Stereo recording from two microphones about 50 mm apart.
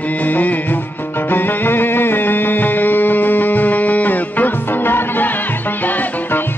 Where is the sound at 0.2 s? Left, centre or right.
Left.